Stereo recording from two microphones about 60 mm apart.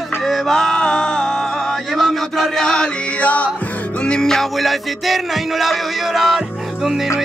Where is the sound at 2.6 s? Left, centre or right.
Centre.